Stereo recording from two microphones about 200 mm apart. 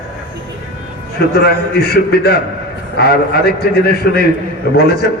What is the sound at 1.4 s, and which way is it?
A man's voice, 55° left (ahead or behind).